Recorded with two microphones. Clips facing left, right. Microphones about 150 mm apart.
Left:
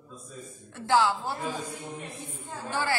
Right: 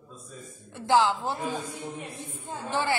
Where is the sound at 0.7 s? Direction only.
20° right (ahead or behind).